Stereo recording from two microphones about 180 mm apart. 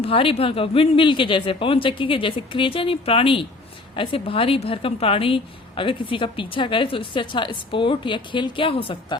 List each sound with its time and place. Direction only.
0.0 s a woman's voice: 30° left (ahead or behind)